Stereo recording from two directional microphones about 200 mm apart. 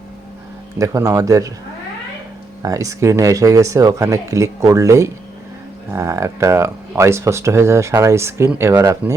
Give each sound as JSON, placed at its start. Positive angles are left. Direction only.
{"t": 0.8, "sound": "speech", "side_deg": -15}
{"t": 2.6, "sound": "speech", "side_deg": -15}